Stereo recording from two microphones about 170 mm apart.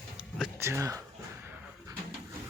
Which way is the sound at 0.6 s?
15° right (ahead or behind).